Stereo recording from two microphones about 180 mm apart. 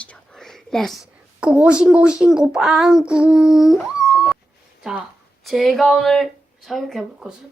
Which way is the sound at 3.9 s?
15° left (ahead or behind).